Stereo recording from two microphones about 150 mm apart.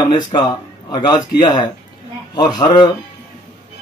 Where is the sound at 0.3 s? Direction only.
30° left (ahead or behind).